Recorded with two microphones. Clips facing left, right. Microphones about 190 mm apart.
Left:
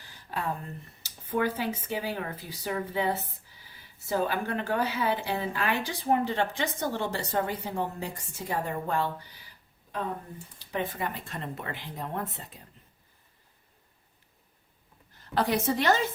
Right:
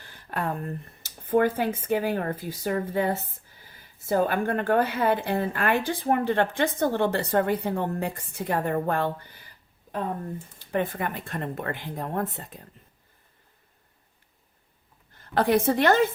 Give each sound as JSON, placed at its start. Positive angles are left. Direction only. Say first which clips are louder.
{"t": 0.0, "sound": "a woman's voice", "louder": "right 3 dB", "side_deg": -55}
{"t": 10.6, "sound": "speech", "louder": "right 4 dB", "side_deg": -50}
{"t": 15.2, "sound": "a woman's voice", "louder": "right 5 dB", "side_deg": -55}